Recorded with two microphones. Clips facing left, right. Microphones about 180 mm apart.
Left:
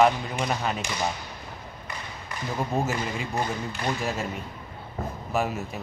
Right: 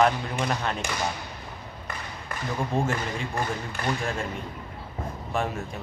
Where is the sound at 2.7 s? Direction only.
5° left (ahead or behind).